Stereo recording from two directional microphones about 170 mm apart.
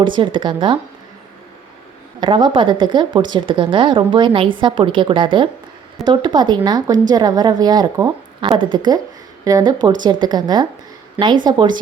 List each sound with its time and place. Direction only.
0.0 s speech: 30° right (ahead or behind)
2.2 s speech: 30° right (ahead or behind)